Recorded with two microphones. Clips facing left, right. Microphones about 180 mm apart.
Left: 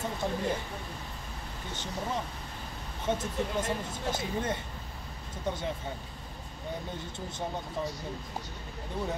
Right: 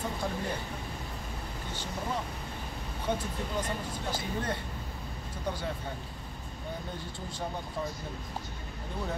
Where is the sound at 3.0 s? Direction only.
25° left (ahead or behind).